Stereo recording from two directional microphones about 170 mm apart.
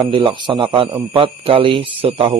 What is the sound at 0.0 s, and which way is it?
Speech, 30° right (ahead or behind).